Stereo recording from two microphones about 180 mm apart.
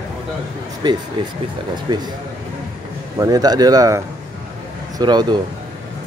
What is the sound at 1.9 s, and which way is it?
Speech, 25° right (ahead or behind).